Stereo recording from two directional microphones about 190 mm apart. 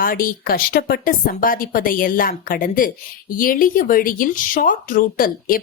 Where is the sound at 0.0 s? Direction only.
50° left (ahead or behind).